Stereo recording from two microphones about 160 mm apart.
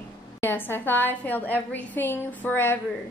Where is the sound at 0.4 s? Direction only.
15° left (ahead or behind).